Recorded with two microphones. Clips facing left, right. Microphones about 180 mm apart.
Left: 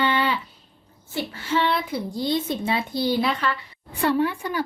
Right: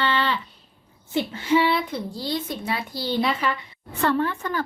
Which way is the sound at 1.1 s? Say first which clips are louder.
Right 5 dB; 20° right (ahead or behind).